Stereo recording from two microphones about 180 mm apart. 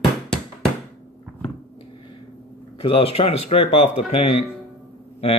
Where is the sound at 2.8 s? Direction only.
30° left (ahead or behind).